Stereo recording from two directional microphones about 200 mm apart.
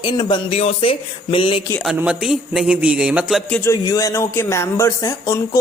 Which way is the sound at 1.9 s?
5° right (ahead or behind).